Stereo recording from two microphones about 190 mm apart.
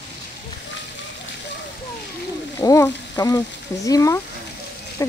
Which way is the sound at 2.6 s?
15° left (ahead or behind).